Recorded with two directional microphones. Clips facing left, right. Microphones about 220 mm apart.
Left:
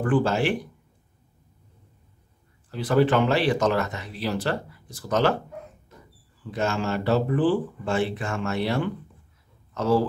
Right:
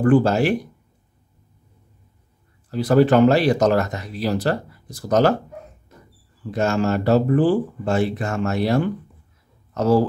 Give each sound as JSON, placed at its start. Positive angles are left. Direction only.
{"t": 0.0, "sound": "speech", "side_deg": -40}
{"t": 2.7, "sound": "speech", "side_deg": -40}
{"t": 6.5, "sound": "speech", "side_deg": -45}